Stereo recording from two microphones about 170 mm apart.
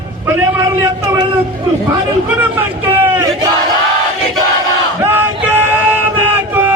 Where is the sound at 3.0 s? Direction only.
10° right (ahead or behind).